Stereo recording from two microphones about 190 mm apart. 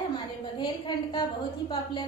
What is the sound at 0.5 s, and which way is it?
Speech, 25° left (ahead or behind).